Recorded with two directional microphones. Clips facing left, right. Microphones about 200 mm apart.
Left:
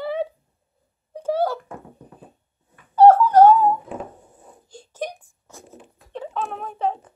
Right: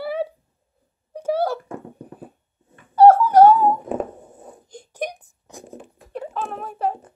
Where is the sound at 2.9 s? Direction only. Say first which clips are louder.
Right 1 dB; 10° right (ahead or behind).